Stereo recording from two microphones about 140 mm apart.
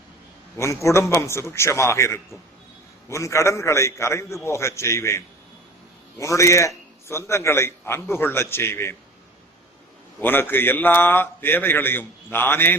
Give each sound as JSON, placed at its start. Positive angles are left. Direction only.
{"t": 0.5, "sound": "a man's voice", "side_deg": 20}
{"t": 10.2, "sound": "a man's voice", "side_deg": 15}